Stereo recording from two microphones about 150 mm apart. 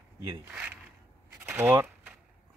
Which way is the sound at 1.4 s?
15° right (ahead or behind).